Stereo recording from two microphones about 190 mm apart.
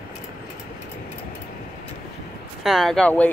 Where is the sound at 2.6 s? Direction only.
Centre (ahead or behind).